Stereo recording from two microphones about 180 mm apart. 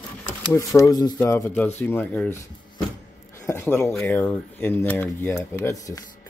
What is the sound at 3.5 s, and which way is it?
Speech, 15° left (ahead or behind).